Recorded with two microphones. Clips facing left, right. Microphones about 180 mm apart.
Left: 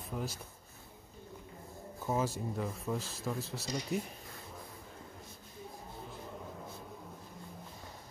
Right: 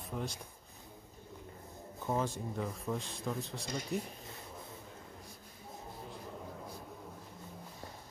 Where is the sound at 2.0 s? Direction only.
5° left (ahead or behind).